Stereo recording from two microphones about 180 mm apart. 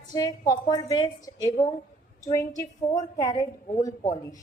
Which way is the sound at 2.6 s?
20° left (ahead or behind).